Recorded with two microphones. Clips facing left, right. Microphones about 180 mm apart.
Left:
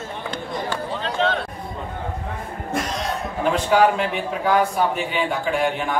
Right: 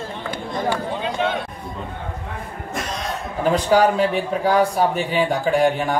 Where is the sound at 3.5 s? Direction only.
40° right (ahead or behind).